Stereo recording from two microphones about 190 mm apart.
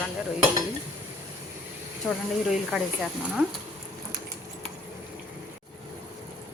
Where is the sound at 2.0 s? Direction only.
Centre (ahead or behind).